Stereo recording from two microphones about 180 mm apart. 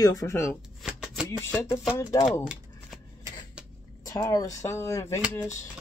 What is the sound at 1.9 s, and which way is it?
Speech, 20° left (ahead or behind).